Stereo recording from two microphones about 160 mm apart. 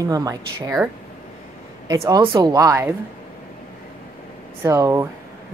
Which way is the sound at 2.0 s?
25° right (ahead or behind).